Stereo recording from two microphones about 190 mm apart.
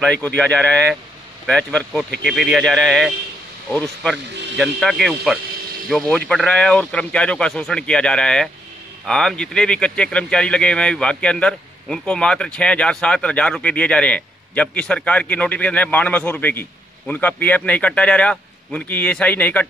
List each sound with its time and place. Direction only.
0.0 s speech: 5° left (ahead or behind)